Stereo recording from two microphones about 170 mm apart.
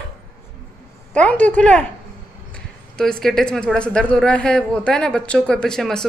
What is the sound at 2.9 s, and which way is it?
A woman's voice, 5° left (ahead or behind).